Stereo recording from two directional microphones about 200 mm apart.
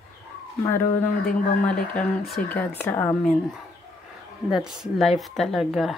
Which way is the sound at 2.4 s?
40° left (ahead or behind).